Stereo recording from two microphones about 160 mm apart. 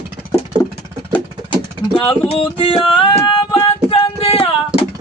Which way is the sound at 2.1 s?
35° left (ahead or behind).